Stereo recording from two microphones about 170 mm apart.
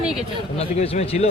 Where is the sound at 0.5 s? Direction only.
35° left (ahead or behind).